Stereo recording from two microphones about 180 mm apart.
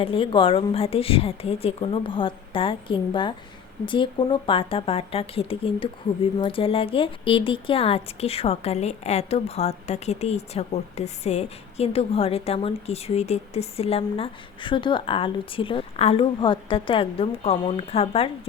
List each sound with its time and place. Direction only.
0.0 s a woman's voice: 30° left (ahead or behind)